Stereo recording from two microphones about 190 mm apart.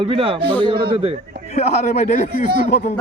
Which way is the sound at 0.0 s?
30° right (ahead or behind).